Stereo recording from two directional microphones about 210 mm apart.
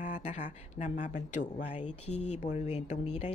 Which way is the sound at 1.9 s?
90° left.